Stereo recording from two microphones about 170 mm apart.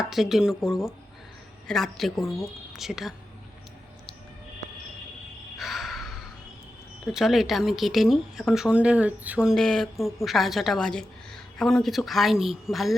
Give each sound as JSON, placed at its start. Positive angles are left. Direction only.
{"t": 0.0, "sound": "speech", "side_deg": 0}
{"t": 5.5, "sound": "a sound", "side_deg": 0}
{"t": 7.0, "sound": "speech", "side_deg": 0}